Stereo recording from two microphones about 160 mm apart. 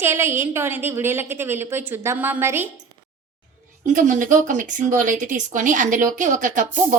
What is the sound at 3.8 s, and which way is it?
Speech, 55° right (ahead or behind).